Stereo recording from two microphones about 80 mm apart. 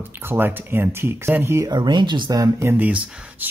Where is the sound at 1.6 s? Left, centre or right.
Right.